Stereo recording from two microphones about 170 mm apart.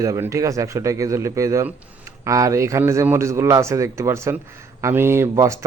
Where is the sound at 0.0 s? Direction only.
20° right (ahead or behind).